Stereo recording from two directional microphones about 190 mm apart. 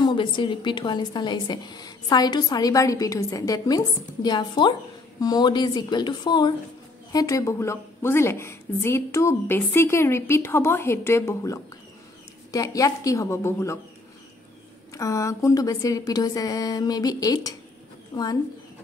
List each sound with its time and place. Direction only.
0.0 s a woman's voice: 25° left (ahead or behind)
14.9 s a woman's voice: 15° left (ahead or behind)